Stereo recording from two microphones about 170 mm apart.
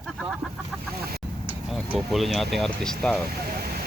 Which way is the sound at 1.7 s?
Centre (ahead or behind).